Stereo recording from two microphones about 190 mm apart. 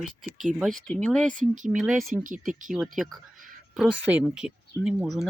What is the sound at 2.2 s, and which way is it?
Speech, 45° right (ahead or behind).